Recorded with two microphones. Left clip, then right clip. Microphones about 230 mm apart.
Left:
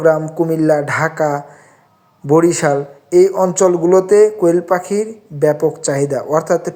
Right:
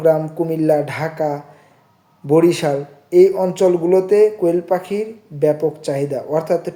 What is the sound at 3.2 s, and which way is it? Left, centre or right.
Speech, centre.